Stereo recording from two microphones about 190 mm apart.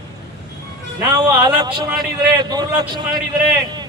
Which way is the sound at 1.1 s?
20° right (ahead or behind).